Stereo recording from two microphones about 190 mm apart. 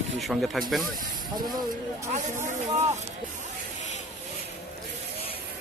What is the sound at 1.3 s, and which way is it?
Speech, 20° right (ahead or behind).